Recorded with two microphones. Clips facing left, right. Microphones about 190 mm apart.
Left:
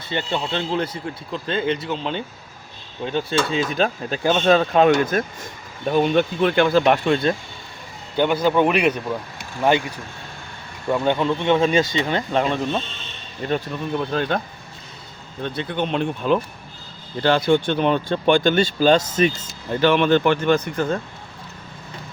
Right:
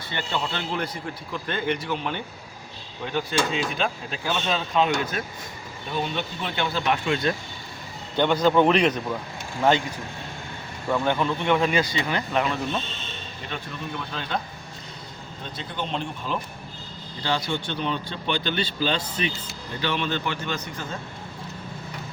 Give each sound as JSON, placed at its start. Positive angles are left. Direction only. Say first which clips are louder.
{"t": 0.1, "sound": "speech", "louder": "left 5 dB", "side_deg": 20}
{"t": 3.7, "sound": "speech", "louder": "left 6 dB", "side_deg": 40}
{"t": 7.1, "sound": "speech", "louder": "left 5 dB", "side_deg": 30}
{"t": 8.1, "sound": "a man's voice", "louder": "left 1 dB", "side_deg": 10}
{"t": 10.9, "sound": "speech", "louder": "left 4 dB", "side_deg": 20}
{"t": 13.4, "sound": "speech", "louder": "left 11 dB", "side_deg": 45}
{"t": 15.4, "sound": "speech", "louder": "left 8 dB", "side_deg": 60}
{"t": 19.9, "sound": "speech", "louder": "left 11 dB", "side_deg": 60}